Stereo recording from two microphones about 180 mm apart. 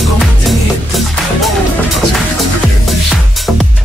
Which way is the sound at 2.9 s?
Centre (ahead or behind).